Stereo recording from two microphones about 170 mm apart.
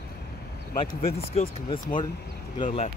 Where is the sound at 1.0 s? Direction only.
35° left (ahead or behind).